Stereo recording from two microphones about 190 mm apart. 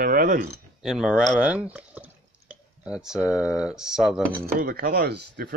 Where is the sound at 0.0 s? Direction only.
50° right (ahead or behind).